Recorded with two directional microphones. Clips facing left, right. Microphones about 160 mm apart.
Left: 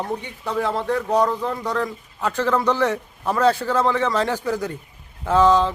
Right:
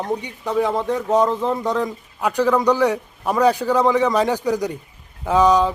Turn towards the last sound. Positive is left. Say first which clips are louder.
# right 1 dB
turn(degrees=-15)  # may be behind; listen again after turning